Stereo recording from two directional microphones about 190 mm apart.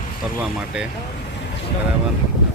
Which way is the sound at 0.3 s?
5° right (ahead or behind).